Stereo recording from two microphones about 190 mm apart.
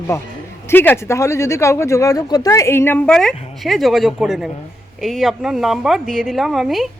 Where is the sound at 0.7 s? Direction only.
10° left (ahead or behind).